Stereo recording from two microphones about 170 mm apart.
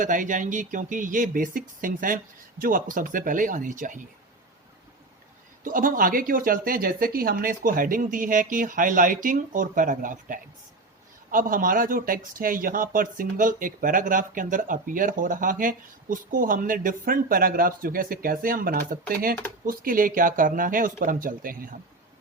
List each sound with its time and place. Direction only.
0.0 s speech: 50° right (ahead or behind)
5.6 s speech: 55° right (ahead or behind)